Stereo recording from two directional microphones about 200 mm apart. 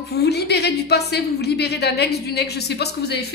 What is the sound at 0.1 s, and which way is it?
Speech, 55° left (ahead or behind).